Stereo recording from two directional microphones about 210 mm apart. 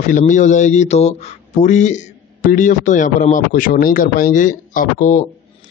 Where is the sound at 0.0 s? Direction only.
35° left (ahead or behind).